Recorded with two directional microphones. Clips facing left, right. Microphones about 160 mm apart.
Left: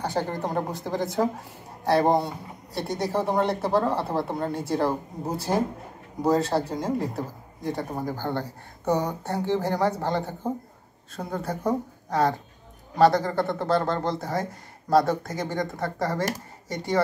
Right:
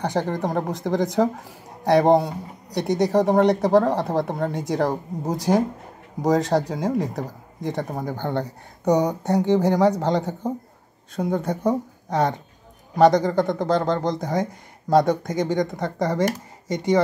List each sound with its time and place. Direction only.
0.4 s speech: 15° right (ahead or behind)
8.2 s speech: 15° right (ahead or behind)